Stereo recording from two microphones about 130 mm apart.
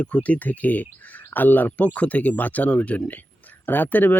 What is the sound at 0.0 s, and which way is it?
Speech, 10° left (ahead or behind).